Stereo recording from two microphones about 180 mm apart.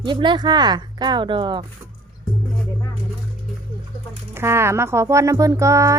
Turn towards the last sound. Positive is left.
turn(degrees=-15)  # may be behind; listen again after turning